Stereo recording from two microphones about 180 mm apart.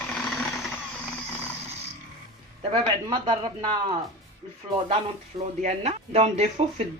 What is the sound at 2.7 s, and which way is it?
Speech, 25° right (ahead or behind).